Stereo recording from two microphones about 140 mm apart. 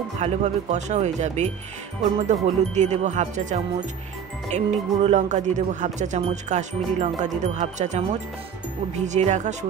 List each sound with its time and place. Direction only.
0.2 s speech: 55° right (ahead or behind)